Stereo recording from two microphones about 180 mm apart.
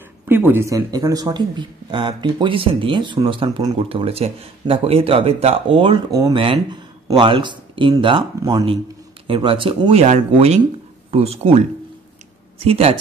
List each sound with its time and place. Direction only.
0.3 s speech: 10° right (ahead or behind)
9.3 s speech: 30° right (ahead or behind)